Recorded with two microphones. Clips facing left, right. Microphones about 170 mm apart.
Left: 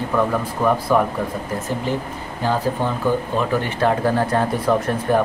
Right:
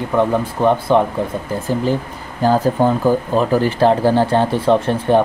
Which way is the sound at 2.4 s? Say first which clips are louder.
Right 7 dB; 40° right (ahead or behind).